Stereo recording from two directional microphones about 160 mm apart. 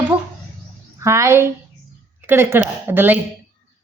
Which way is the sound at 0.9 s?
20° right (ahead or behind).